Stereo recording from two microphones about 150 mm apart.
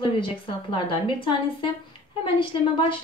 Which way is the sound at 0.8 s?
35° left (ahead or behind).